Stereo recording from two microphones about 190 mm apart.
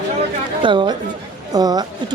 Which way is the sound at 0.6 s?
25° right (ahead or behind).